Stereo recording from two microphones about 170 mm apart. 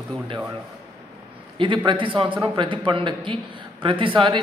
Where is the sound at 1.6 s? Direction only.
30° right (ahead or behind).